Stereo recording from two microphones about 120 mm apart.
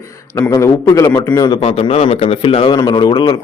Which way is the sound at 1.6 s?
50° left (ahead or behind).